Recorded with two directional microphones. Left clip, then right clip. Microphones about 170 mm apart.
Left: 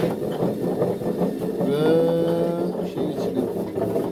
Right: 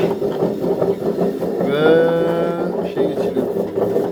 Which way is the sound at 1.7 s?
15° left (ahead or behind).